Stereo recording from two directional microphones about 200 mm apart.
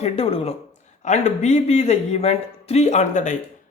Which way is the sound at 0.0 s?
30° left (ahead or behind).